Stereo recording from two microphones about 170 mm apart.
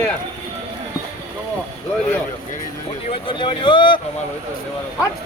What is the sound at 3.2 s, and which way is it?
Speech, 30° left (ahead or behind).